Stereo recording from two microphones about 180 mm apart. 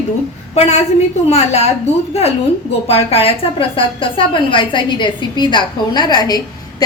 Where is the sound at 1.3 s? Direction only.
35° left (ahead or behind).